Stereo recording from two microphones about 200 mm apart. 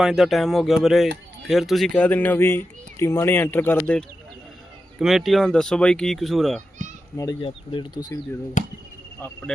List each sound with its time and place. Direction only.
0.0 s speech: centre (ahead or behind)
7.2 s speech: 20° left (ahead or behind)